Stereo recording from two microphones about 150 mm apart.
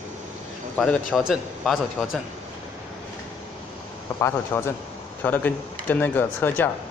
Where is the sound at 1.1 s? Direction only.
5° right (ahead or behind).